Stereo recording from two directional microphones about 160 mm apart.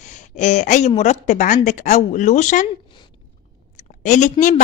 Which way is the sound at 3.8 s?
50° left (ahead or behind).